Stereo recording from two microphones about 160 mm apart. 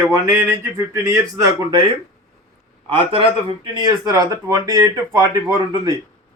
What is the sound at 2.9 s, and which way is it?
A man's voice, 35° right (ahead or behind).